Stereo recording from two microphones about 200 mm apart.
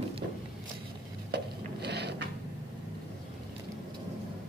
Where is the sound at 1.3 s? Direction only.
55° right (ahead or behind).